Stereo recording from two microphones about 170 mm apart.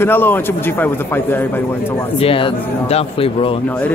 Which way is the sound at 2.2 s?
35° left (ahead or behind).